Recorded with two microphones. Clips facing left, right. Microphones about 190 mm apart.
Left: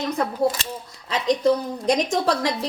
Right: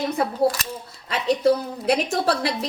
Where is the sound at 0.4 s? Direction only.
25° left (ahead or behind).